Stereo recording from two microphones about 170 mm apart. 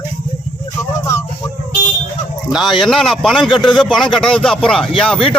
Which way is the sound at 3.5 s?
30° left (ahead or behind).